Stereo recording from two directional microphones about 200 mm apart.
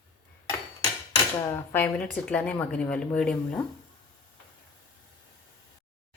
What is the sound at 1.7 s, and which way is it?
Speech, 10° left (ahead or behind).